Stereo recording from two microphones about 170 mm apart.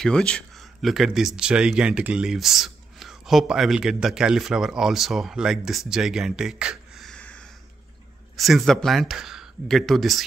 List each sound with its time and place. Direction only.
0.0 s speech: 5° left (ahead or behind)